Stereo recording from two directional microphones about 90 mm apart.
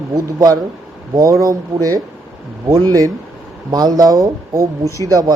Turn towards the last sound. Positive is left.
turn(degrees=-40)  # may be behind; listen again after turning